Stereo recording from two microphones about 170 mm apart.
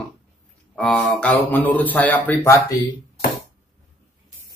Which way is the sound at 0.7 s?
5° left (ahead or behind).